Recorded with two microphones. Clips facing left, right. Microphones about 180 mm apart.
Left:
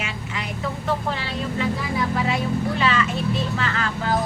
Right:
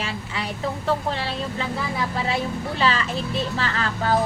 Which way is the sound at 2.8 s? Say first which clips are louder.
Left 1 dB; 35° right (ahead or behind).